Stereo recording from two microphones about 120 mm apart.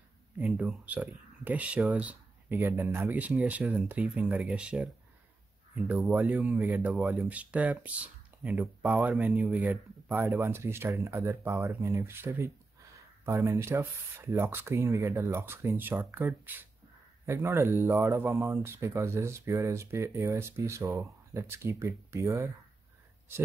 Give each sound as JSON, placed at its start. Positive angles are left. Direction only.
{"t": 0.4, "sound": "speech", "side_deg": -10}